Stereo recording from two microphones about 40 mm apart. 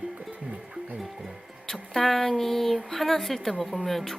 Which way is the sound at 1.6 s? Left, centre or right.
Centre.